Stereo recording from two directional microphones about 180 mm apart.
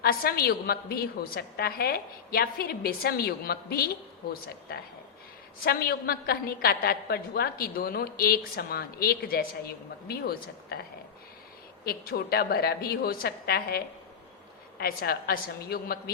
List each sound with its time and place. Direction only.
0.0 s a woman's voice: 55° left (ahead or behind)
11.9 s a woman's voice: 60° left (ahead or behind)